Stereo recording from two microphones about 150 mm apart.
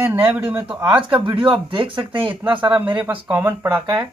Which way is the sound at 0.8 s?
35° right (ahead or behind).